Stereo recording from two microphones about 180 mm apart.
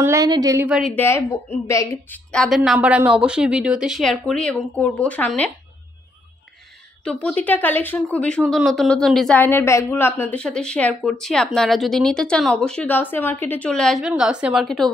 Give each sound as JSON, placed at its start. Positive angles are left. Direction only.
{"t": 0.0, "sound": "a woman's voice", "side_deg": -20}
{"t": 0.7, "sound": "speech", "side_deg": 0}
{"t": 0.9, "sound": "speech", "side_deg": 15}
{"t": 7.1, "sound": "speech", "side_deg": 5}